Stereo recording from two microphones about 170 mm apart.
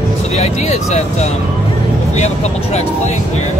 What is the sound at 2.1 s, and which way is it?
Speech, 40° left (ahead or behind).